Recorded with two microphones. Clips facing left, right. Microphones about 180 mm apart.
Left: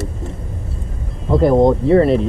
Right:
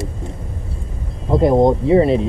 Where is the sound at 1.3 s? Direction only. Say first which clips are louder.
Left 1 dB; centre (ahead or behind).